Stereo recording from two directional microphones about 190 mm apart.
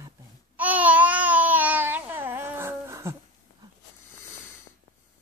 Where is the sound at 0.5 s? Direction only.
10° right (ahead or behind).